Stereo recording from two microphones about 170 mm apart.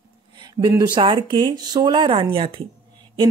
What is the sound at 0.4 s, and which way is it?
A woman's voice, 25° right (ahead or behind).